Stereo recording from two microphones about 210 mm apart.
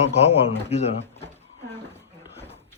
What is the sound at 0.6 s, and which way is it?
Speech, 30° left (ahead or behind).